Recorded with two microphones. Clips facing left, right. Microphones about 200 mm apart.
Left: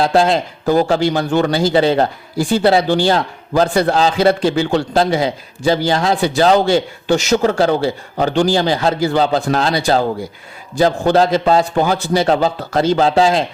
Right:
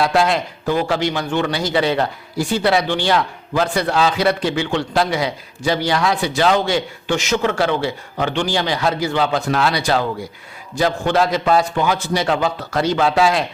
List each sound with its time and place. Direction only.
0.0 s a man's voice: 30° left (ahead or behind)